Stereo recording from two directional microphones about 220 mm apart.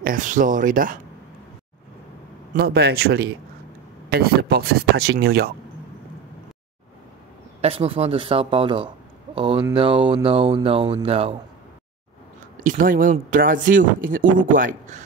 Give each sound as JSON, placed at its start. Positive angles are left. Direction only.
{"t": 0.0, "sound": "speech", "side_deg": -35}
{"t": 2.5, "sound": "speech", "side_deg": -45}
{"t": 7.6, "sound": "speech", "side_deg": -25}
{"t": 12.5, "sound": "speech", "side_deg": -35}